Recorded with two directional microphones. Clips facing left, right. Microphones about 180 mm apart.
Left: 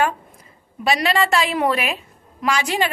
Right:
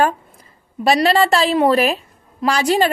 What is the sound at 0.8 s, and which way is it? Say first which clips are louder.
A woman's voice: right 5 dB; 35° right (ahead or behind).